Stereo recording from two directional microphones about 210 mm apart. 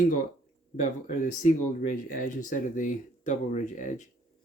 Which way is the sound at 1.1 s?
40° left (ahead or behind).